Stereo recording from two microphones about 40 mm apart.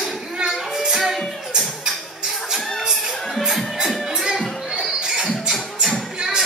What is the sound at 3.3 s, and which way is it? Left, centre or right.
Music, centre.